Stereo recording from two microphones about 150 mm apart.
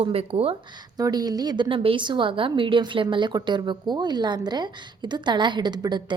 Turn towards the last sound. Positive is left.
turn(degrees=-30)  # may be behind; listen again after turning